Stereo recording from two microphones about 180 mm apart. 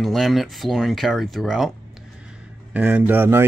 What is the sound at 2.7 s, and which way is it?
Speech, 10° right (ahead or behind).